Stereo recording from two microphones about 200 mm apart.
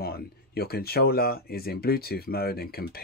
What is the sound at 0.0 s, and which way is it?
Speech, 50° left (ahead or behind).